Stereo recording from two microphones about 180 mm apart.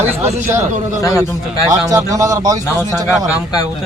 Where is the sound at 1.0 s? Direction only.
20° left (ahead or behind).